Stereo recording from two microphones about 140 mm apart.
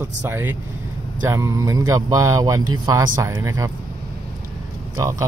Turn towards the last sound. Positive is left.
turn(degrees=-25)  # may be behind; listen again after turning